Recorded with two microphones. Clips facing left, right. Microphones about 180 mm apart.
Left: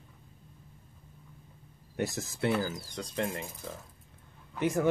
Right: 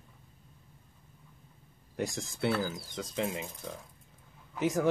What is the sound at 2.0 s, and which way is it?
Speech, 5° left (ahead or behind).